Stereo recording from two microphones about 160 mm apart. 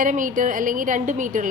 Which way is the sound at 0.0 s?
55° right (ahead or behind).